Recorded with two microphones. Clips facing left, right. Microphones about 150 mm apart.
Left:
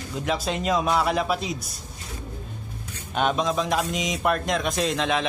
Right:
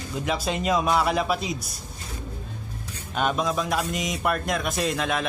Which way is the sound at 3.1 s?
Centre (ahead or behind).